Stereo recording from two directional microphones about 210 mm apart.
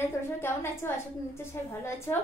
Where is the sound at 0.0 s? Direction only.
10° left (ahead or behind).